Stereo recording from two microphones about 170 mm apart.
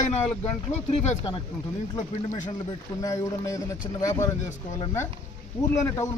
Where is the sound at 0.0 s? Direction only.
40° left (ahead or behind).